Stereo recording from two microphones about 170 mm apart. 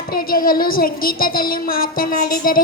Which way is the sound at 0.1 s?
60° left (ahead or behind).